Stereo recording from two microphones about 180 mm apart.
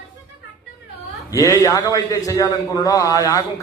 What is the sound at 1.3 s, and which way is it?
A man's voice, 20° left (ahead or behind).